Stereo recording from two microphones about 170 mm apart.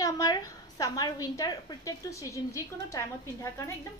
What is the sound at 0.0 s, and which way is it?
A woman's voice, 20° left (ahead or behind).